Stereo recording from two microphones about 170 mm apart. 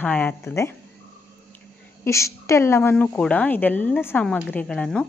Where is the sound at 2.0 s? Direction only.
15° left (ahead or behind).